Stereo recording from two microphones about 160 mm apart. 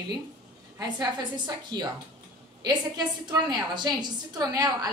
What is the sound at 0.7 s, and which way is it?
A woman's voice, 25° right (ahead or behind).